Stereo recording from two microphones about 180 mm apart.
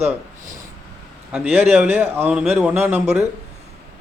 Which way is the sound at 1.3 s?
10° right (ahead or behind).